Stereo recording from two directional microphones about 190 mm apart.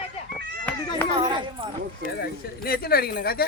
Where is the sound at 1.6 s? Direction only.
30° right (ahead or behind).